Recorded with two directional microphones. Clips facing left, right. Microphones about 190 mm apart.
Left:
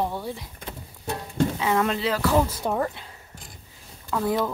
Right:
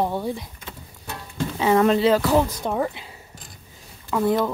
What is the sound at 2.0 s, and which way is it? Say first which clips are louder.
Music: right 6 dB; 25° right (ahead or behind).